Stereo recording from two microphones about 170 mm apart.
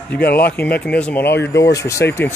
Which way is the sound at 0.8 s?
5° left (ahead or behind).